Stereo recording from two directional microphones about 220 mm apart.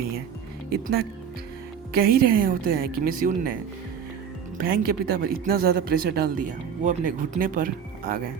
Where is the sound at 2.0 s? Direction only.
40° right (ahead or behind).